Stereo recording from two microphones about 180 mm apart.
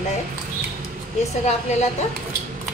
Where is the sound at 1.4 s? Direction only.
40° left (ahead or behind).